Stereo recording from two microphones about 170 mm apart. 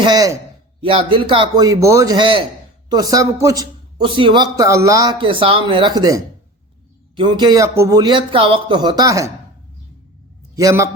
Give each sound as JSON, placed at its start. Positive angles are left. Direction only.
{"t": 0.0, "sound": "speech", "side_deg": -25}
{"t": 10.5, "sound": "a man's voice", "side_deg": -20}